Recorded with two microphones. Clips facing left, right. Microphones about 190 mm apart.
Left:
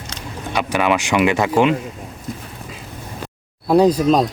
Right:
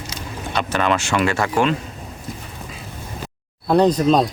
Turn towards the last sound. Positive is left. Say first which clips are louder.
# left 1 dB
turn(degrees=5)  # may be behind; listen again after turning